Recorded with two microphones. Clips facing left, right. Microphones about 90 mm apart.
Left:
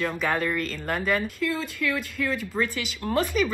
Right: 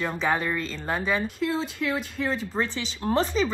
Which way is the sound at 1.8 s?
40° right (ahead or behind).